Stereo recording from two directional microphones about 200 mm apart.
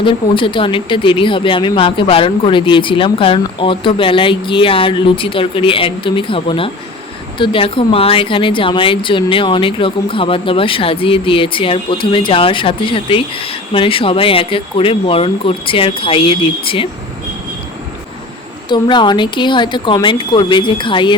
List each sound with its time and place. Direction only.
0.0 s a woman's voice: 25° left (ahead or behind)
18.7 s a woman's voice: 25° left (ahead or behind)